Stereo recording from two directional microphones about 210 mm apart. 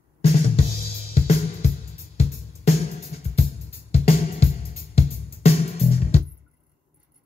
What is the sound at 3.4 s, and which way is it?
Music, 30° left (ahead or behind).